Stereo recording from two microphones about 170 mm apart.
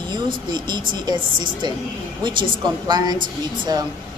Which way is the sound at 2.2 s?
25° right (ahead or behind).